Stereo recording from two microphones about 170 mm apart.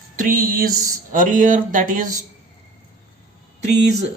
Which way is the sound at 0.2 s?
55° right (ahead or behind).